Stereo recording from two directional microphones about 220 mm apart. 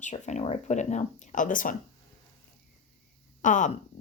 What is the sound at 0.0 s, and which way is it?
A woman's voice, 30° left (ahead or behind).